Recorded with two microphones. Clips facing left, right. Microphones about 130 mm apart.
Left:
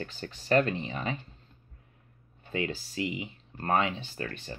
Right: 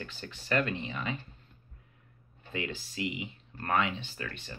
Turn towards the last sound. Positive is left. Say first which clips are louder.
# left 4 dB
turn(degrees=40)  # may be behind; listen again after turning